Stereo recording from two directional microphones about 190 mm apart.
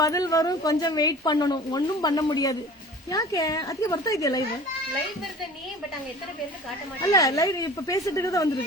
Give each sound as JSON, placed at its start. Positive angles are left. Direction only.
{"t": 0.0, "sound": "a woman's voice", "side_deg": 15}
{"t": 7.0, "sound": "speech", "side_deg": 20}